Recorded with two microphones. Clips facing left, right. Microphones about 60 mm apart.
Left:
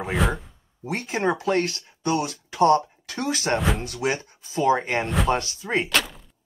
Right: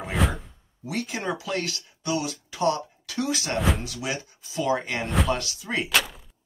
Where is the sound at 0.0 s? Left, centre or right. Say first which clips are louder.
Left 2 dB; centre.